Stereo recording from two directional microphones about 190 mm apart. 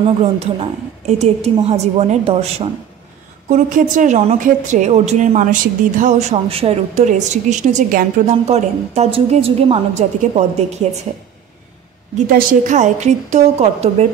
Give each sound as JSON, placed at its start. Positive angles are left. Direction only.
{"t": 0.0, "sound": "a woman's voice", "side_deg": -30}
{"t": 3.4, "sound": "a woman's voice", "side_deg": -45}
{"t": 12.3, "sound": "a woman's voice", "side_deg": -50}